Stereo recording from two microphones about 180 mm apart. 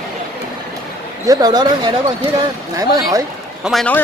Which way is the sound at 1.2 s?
20° right (ahead or behind).